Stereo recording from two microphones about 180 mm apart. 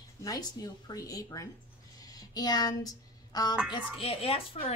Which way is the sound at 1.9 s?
20° left (ahead or behind).